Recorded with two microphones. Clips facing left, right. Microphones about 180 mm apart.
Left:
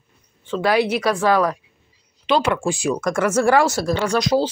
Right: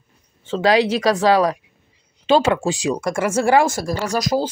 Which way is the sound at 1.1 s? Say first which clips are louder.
Right 2 dB; 35° right (ahead or behind).